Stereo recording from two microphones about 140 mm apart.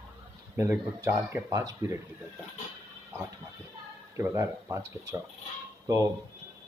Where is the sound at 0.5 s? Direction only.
20° right (ahead or behind).